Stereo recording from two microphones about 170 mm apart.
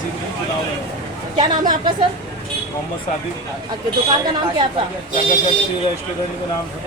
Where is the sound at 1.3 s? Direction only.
25° right (ahead or behind).